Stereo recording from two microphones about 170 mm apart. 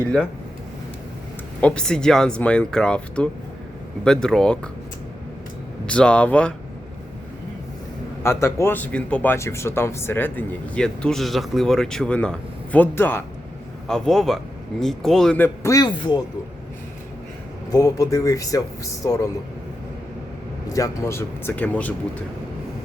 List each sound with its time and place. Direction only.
0.0 s a man's voice: 5° left (ahead or behind)
1.6 s a man's voice: 5° left (ahead or behind)
5.8 s speech: 5° left (ahead or behind)
8.2 s speech: 15° left (ahead or behind)
13.8 s a man's voice: 5° left (ahead or behind); by 16.2 s 25° left (ahead or behind)
17.7 s speech: 20° left (ahead or behind)
20.7 s speech: 20° left (ahead or behind)